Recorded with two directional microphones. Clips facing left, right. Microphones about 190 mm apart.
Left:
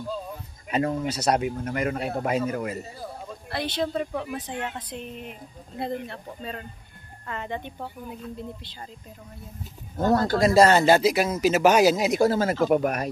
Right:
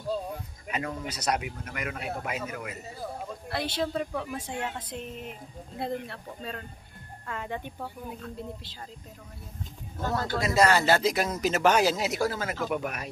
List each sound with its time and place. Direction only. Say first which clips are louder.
0.7 s speech: left 8 dB; 30° left (ahead or behind)
3.4 s speech: left 3 dB; 5° right (ahead or behind)
9.9 s speech: left 8 dB; 40° left (ahead or behind); by 11.0 s 20° left (ahead or behind)
11.0 s speech: left 5 dB; 10° left (ahead or behind)
12.3 s speech: left 9 dB; 35° left (ahead or behind)